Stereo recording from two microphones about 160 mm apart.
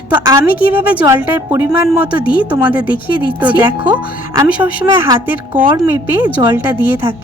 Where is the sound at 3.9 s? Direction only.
20° right (ahead or behind).